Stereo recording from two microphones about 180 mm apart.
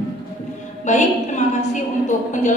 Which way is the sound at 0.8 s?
40° left (ahead or behind).